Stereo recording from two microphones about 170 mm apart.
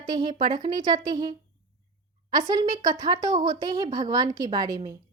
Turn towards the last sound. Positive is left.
turn(degrees=-25)  # may be behind; listen again after turning